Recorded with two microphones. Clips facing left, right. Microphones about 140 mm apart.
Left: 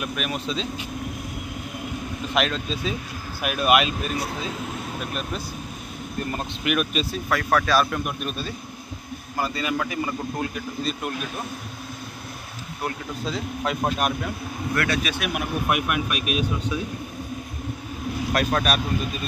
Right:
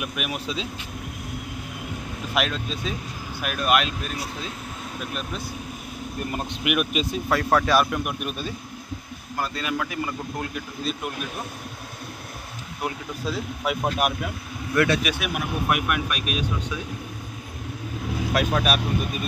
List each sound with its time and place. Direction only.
0.0 s speech: 10° right (ahead or behind)
2.3 s a man's voice: 5° right (ahead or behind)
6.3 s speech: 10° right (ahead or behind)
9.4 s a man's voice: centre (ahead or behind)
12.8 s speech: 10° right (ahead or behind)
14.8 s speech: 20° right (ahead or behind)
15.1 s a man's voice: centre (ahead or behind)
18.3 s a man's voice: 5° right (ahead or behind)